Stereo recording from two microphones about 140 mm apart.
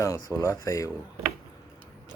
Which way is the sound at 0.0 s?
25° left (ahead or behind).